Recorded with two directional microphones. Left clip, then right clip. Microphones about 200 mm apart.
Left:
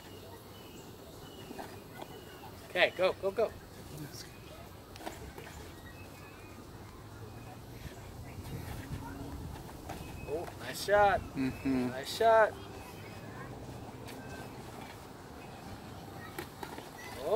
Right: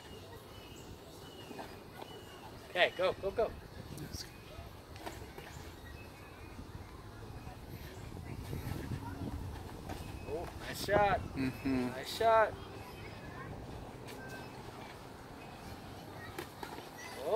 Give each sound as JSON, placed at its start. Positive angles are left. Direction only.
{"t": 2.7, "sound": "speech", "side_deg": 55}
{"t": 10.7, "sound": "vehicle", "side_deg": 45}
{"t": 11.3, "sound": "speech", "side_deg": 0}
{"t": 11.9, "sound": "speech", "side_deg": 50}